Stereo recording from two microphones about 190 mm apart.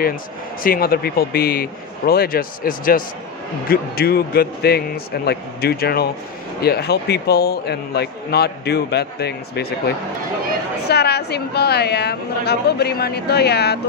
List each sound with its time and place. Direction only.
0.0 s a man's voice: 50° left (ahead or behind)